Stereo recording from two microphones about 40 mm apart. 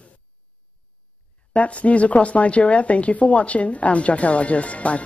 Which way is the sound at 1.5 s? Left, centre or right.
Left.